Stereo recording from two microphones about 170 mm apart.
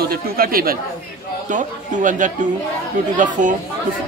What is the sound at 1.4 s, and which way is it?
Speech, 50° right (ahead or behind).